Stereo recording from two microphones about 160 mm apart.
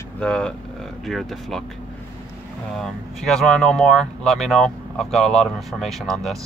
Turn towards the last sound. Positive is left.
turn(degrees=0)  # may be behind; listen again after turning